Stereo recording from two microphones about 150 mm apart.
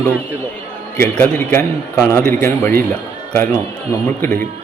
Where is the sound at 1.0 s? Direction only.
15° left (ahead or behind).